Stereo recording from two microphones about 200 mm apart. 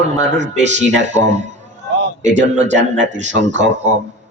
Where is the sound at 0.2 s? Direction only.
60° right (ahead or behind).